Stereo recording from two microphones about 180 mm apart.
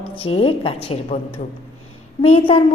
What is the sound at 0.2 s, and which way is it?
A woman's voice, 30° left (ahead or behind).